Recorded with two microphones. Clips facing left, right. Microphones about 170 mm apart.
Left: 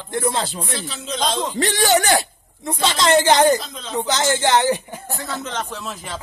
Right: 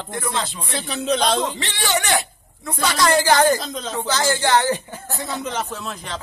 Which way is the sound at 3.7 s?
40° right (ahead or behind).